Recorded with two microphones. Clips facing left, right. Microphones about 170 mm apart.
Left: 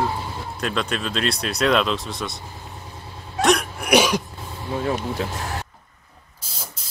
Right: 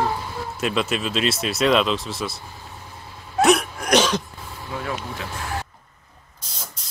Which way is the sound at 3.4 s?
5° right (ahead or behind).